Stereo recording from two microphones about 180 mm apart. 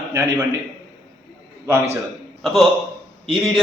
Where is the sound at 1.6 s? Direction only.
15° right (ahead or behind).